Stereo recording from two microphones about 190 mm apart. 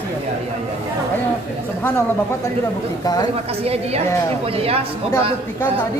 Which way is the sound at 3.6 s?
30° right (ahead or behind).